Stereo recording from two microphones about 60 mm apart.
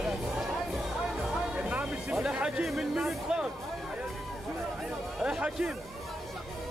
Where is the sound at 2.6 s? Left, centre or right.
Centre.